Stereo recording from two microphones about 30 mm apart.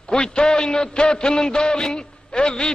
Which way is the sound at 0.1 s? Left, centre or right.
Left.